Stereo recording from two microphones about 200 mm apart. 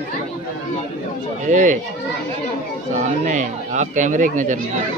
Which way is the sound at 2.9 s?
40° right (ahead or behind).